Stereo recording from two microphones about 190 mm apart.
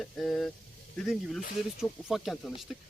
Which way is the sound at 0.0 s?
Centre (ahead or behind).